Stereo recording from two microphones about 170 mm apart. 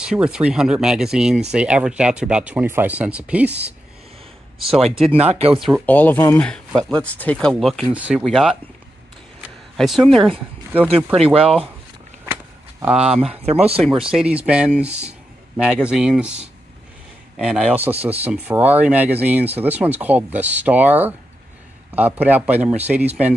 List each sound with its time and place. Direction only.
0.0 s speech: 5° right (ahead or behind)
5.1 s speech: 40° right (ahead or behind)
5.9 s speech: 10° left (ahead or behind)
7.9 s speech: 5° right (ahead or behind)
9.4 s a sound: centre (ahead or behind)
11.1 s speech: 35° right (ahead or behind)
12.8 s speech: 5° right (ahead or behind)
13.1 s speech: 35° right (ahead or behind)
13.6 s speech: 5° right (ahead or behind)
17.4 s speech: 5° right (ahead or behind)